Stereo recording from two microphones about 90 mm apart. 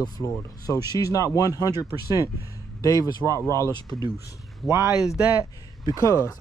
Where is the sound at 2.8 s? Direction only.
45° left (ahead or behind).